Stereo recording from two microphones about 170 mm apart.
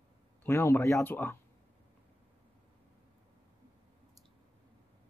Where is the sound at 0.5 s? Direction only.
15° left (ahead or behind).